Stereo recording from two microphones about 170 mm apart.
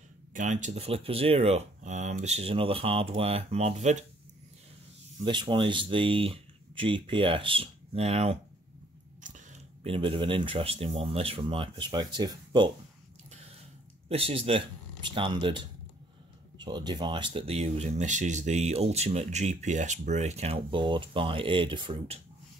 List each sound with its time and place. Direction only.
0.3 s speech: 45° right (ahead or behind)
5.2 s speech: 30° right (ahead or behind)
9.2 s chewing: 45° right (ahead or behind)
9.8 s speech: 30° right (ahead or behind)
14.0 s speech: 35° right (ahead or behind)